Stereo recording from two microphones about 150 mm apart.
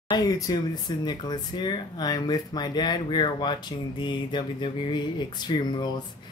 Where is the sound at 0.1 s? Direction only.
25° left (ahead or behind).